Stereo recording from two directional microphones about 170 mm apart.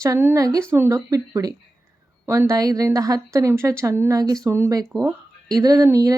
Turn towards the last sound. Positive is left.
turn(degrees=-20)  # may be behind; listen again after turning